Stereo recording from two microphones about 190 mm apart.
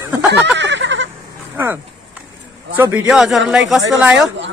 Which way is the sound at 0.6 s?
70° right (ahead or behind).